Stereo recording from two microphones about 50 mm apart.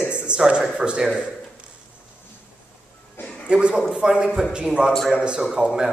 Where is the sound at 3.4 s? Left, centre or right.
Right.